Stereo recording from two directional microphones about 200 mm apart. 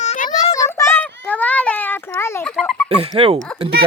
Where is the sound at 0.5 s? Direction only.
15° left (ahead or behind).